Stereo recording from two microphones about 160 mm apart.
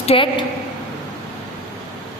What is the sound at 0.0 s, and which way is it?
Speech, 35° left (ahead or behind).